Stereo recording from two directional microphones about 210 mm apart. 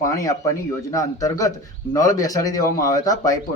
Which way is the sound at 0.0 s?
15° left (ahead or behind).